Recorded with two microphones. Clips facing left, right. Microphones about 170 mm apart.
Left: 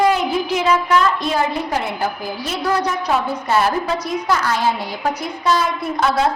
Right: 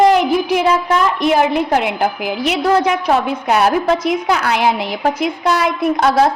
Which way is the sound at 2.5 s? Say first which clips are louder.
Right 5 dB; 90° right.